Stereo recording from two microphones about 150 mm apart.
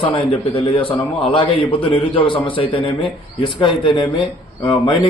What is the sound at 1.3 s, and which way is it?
A man's voice, 35° left (ahead or behind).